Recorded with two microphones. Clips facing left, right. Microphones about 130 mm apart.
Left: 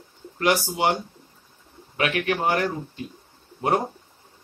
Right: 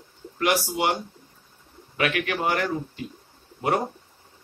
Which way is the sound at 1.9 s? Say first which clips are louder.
Left 1 dB; 35° left (ahead or behind).